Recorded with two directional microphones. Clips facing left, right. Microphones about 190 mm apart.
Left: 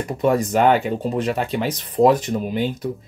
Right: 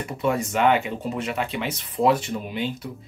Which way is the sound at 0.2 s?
40° left (ahead or behind).